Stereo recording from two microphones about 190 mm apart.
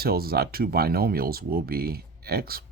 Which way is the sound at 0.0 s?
55° right (ahead or behind).